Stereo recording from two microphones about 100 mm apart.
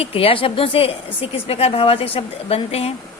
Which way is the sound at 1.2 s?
80° left.